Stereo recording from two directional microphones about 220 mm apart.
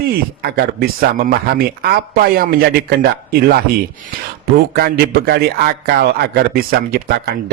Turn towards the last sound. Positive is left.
turn(degrees=-45)  # may be behind; listen again after turning